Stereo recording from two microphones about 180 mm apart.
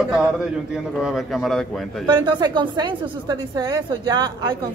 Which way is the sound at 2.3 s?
25° right (ahead or behind).